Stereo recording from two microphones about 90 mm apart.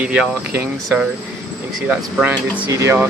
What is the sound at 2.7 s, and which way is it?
Speech, 35° right (ahead or behind).